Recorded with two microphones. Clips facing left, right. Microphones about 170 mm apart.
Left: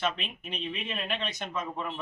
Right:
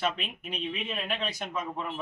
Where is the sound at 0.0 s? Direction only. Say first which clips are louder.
Right 1 dB; 5° right (ahead or behind).